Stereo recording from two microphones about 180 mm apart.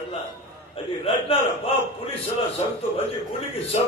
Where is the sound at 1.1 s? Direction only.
30° left (ahead or behind).